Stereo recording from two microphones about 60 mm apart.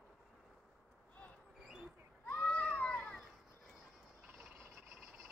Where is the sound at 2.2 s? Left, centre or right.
Left.